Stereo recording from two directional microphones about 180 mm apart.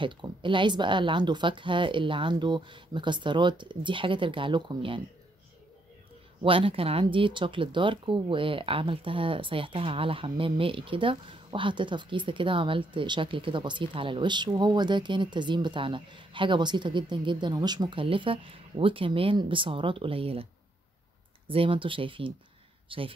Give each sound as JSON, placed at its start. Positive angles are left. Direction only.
{"t": 0.0, "sound": "speech", "side_deg": -25}
{"t": 6.4, "sound": "speech", "side_deg": -30}
{"t": 21.5, "sound": "speech", "side_deg": -30}